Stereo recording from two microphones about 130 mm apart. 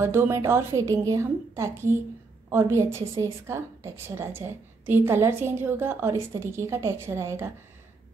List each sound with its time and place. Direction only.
0.0 s a woman's voice: 20° right (ahead or behind)